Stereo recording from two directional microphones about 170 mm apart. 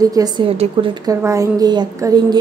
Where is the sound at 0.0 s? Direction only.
20° right (ahead or behind).